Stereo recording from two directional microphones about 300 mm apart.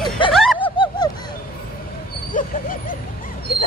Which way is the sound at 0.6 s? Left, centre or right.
Centre.